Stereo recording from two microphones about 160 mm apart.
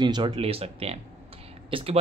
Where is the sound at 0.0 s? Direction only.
30° right (ahead or behind).